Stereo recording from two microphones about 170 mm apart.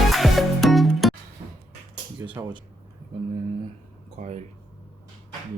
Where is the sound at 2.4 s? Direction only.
15° right (ahead or behind).